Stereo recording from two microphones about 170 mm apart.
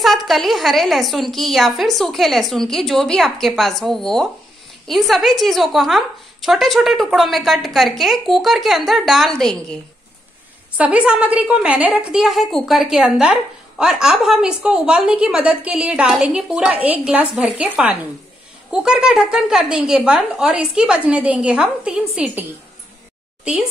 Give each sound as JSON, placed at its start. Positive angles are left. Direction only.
{"t": 0.0, "sound": "a woman's voice", "side_deg": 0}
{"t": 10.8, "sound": "a woman's voice", "side_deg": -10}